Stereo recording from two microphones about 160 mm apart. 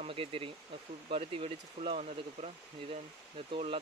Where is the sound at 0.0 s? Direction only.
35° right (ahead or behind).